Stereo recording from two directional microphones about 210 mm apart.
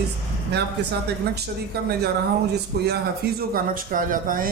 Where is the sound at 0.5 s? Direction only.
55° right (ahead or behind).